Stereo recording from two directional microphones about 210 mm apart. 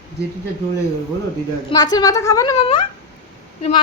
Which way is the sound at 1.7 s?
20° left (ahead or behind).